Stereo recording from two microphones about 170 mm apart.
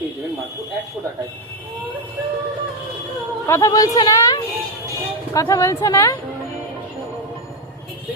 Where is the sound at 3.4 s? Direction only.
20° left (ahead or behind).